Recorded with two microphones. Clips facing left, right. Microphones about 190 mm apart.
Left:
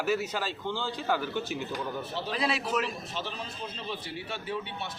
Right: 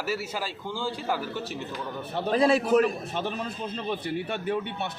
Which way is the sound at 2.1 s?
50° right (ahead or behind).